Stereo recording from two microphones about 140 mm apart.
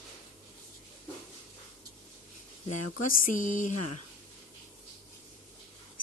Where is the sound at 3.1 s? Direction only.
70° left (ahead or behind).